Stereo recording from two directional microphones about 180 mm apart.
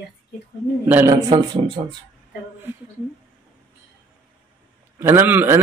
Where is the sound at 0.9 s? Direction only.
10° right (ahead or behind).